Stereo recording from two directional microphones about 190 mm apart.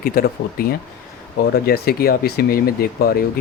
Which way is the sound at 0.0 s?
50° left (ahead or behind).